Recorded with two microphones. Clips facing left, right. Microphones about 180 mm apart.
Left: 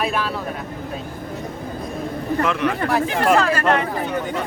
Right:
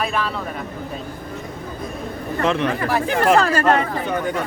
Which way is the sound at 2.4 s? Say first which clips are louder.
Right 2 dB; 30° right (ahead or behind).